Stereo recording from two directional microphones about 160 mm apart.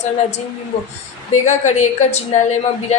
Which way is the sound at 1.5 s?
45° left (ahead or behind).